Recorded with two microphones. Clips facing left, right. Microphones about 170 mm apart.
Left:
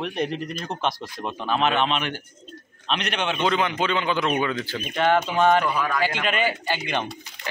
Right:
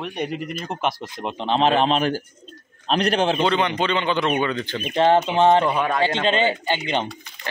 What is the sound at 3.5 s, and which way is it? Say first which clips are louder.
Speech: right 2 dB; centre (ahead or behind).